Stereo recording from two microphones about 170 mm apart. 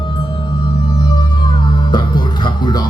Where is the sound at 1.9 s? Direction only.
25° left (ahead or behind).